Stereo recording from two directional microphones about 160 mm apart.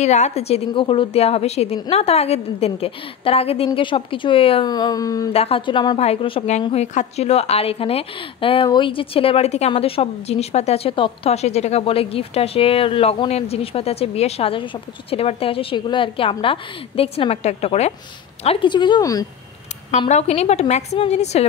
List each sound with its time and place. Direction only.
0.0 s a woman's voice: 45° left (ahead or behind); by 5.3 s 20° left (ahead or behind)
5.3 s a woman's voice: 35° left (ahead or behind)
20.1 s a woman's voice: 45° left (ahead or behind)